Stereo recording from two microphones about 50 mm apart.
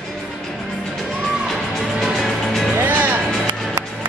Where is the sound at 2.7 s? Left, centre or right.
Right.